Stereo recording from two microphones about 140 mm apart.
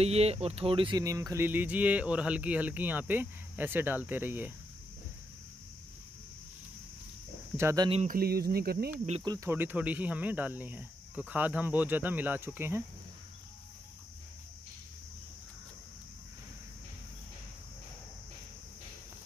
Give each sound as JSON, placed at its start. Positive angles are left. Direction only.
{"t": 0.0, "sound": "speech", "side_deg": -45}
{"t": 1.0, "sound": "speech", "side_deg": -25}
{"t": 7.5, "sound": "speech", "side_deg": -20}
{"t": 8.1, "sound": "speech", "side_deg": -90}
{"t": 9.2, "sound": "speech", "side_deg": -30}
{"t": 9.5, "sound": "speech", "side_deg": -15}